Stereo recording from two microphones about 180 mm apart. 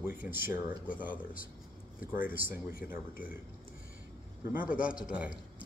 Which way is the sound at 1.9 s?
10° right (ahead or behind).